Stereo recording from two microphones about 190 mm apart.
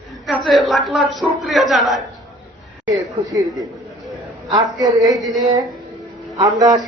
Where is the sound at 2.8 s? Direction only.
20° right (ahead or behind).